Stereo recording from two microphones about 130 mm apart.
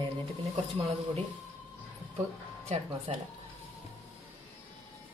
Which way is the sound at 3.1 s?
55° right (ahead or behind).